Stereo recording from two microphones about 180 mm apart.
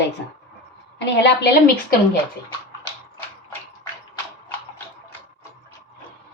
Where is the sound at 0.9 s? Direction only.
75° left (ahead or behind).